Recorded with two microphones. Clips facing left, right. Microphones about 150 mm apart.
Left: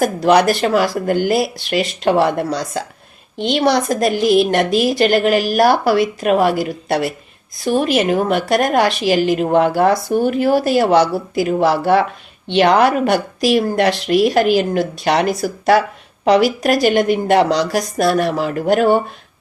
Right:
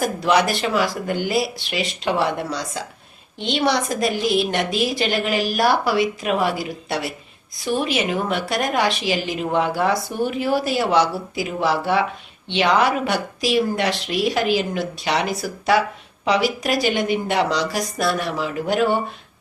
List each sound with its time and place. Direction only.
0.0 s a woman's voice: 45° left (ahead or behind)